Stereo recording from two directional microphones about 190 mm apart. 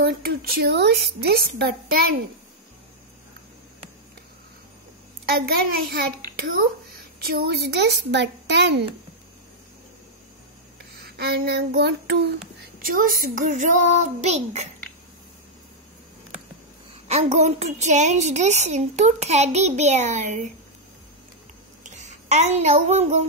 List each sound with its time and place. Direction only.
0.0 s a woman's voice: 55° right (ahead or behind)
5.2 s a child's voice: 55° right (ahead or behind)
11.1 s a woman's voice: 55° right (ahead or behind)
12.8 s a woman's voice: 45° right (ahead or behind)
17.1 s a woman's voice: 35° right (ahead or behind)
21.8 s a child's voice: 40° right (ahead or behind)